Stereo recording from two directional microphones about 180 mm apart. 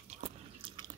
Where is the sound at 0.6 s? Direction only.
30° right (ahead or behind).